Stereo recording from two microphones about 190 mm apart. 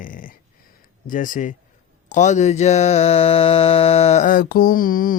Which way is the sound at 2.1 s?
40° left (ahead or behind).